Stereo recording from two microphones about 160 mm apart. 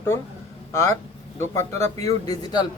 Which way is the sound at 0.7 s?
15° left (ahead or behind).